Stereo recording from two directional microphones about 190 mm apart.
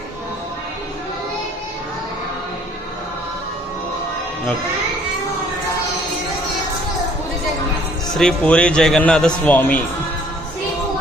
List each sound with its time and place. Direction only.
8.1 s a man's voice: 5° left (ahead or behind)